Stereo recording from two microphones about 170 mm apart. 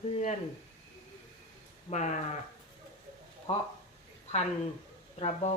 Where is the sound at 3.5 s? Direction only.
35° left (ahead or behind).